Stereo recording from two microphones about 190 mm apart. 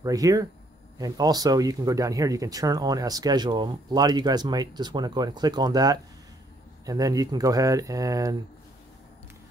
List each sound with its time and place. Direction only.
0.0 s speech: 20° right (ahead or behind)